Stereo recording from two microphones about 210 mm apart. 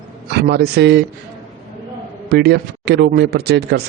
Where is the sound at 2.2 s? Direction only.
50° right (ahead or behind).